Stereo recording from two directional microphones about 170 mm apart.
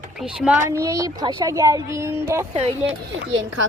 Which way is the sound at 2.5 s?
35° right (ahead or behind).